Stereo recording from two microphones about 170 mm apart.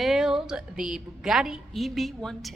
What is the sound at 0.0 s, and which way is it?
A woman's voice, 5° right (ahead or behind).